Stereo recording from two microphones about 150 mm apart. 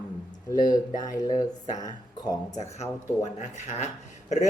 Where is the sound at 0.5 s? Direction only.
25° left (ahead or behind).